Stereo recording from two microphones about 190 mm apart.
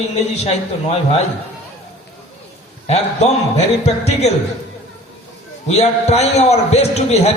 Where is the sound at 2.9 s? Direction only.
35° left (ahead or behind).